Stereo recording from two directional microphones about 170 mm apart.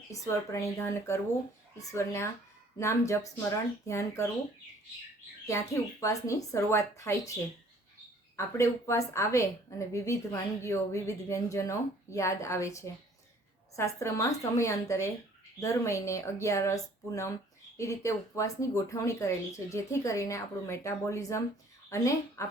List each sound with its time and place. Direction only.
0.1 s a woman's voice: 15° left (ahead or behind)
5.5 s a woman's voice: 15° left (ahead or behind)
8.4 s a woman's voice: 15° left (ahead or behind)